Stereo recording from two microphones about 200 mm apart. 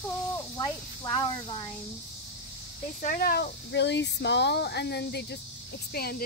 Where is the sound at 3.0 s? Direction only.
45° left (ahead or behind).